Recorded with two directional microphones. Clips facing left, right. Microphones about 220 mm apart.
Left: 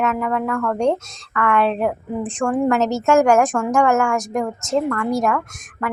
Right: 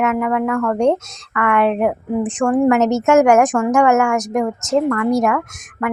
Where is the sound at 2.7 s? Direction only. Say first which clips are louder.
Right 2 dB; 20° right (ahead or behind).